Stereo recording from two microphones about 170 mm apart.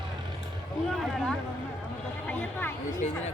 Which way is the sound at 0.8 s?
Centre (ahead or behind).